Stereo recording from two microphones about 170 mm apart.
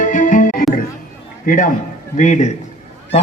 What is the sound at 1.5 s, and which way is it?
A man's voice, 50° left (ahead or behind).